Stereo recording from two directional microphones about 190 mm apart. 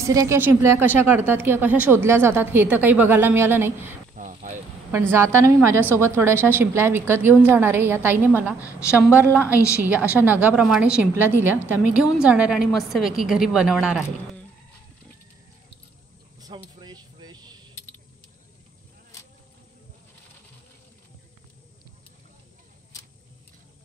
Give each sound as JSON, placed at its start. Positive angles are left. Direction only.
{"t": 0.0, "sound": "a woman's voice", "side_deg": -15}
{"t": 4.1, "sound": "vehicle", "side_deg": -40}
{"t": 5.1, "sound": "a woman's voice", "side_deg": -15}
{"t": 8.6, "sound": "a woman's voice", "side_deg": 15}
{"t": 8.9, "sound": "a woman's voice", "side_deg": -10}
{"t": 16.3, "sound": "a sound", "side_deg": -20}